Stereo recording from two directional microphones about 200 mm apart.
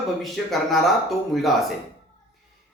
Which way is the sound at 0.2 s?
Centre (ahead or behind).